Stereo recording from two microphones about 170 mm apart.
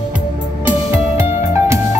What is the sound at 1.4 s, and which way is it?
Music, 15° right (ahead or behind).